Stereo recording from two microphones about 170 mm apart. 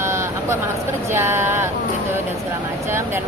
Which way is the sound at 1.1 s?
15° right (ahead or behind).